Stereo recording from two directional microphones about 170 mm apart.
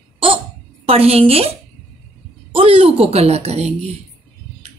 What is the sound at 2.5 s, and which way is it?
A woman's voice, 35° right (ahead or behind).